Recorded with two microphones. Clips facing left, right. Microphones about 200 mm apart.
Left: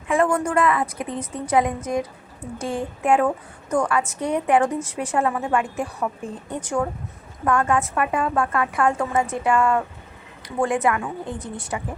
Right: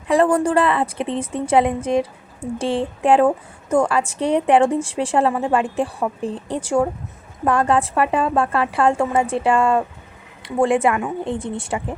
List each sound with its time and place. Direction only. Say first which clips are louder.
0.1 s a woman's voice: right 4 dB; 35° right (ahead or behind)